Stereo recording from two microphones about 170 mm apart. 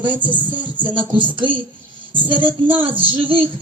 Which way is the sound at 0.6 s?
30° right (ahead or behind).